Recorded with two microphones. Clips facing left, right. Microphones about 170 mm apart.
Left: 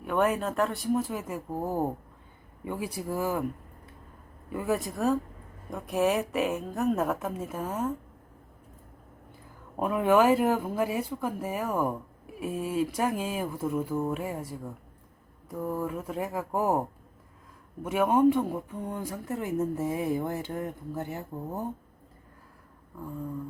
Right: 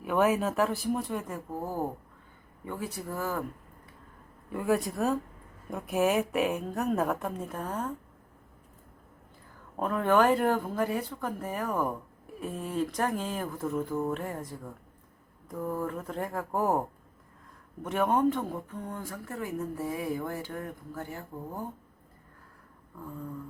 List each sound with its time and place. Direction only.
0.0 s speech: centre (ahead or behind)
2.6 s speech: 10° left (ahead or behind)
4.4 s speech: centre (ahead or behind)
9.7 s speech: 10° left (ahead or behind)
17.8 s speech: 5° left (ahead or behind)